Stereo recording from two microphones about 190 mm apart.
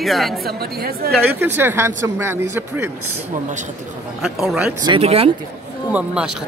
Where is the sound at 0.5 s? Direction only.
55° right (ahead or behind).